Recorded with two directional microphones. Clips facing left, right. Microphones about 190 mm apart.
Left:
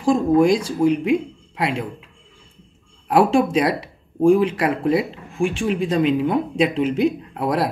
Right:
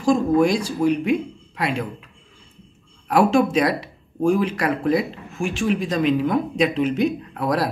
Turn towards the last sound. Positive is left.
turn(degrees=25)  # may be behind; listen again after turning